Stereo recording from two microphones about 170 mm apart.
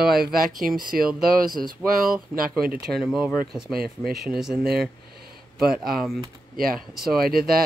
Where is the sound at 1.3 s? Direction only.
55° right (ahead or behind).